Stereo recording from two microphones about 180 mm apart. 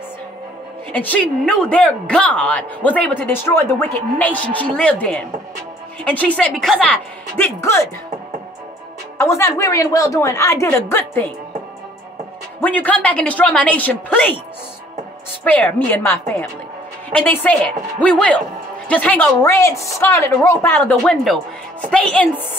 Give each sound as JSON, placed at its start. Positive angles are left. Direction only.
{"t": 0.9, "sound": "speech", "side_deg": 10}
{"t": 9.2, "sound": "speech", "side_deg": 15}
{"t": 12.6, "sound": "speech", "side_deg": 10}
{"t": 15.4, "sound": "speech", "side_deg": 10}
{"t": 21.0, "sound": "speech", "side_deg": 0}